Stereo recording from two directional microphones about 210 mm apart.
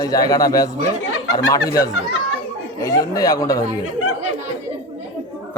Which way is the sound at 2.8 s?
15° left (ahead or behind).